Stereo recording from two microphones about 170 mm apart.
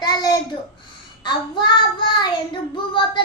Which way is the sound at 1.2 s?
25° left (ahead or behind).